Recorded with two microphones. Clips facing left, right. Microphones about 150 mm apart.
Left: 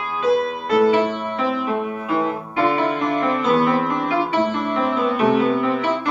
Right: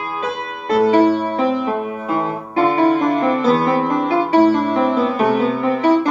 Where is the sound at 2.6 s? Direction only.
40° right (ahead or behind).